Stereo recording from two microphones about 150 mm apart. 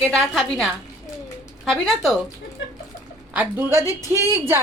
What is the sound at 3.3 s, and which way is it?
Speech, 15° right (ahead or behind).